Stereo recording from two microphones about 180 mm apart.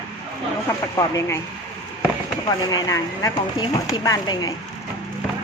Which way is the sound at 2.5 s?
20° left (ahead or behind).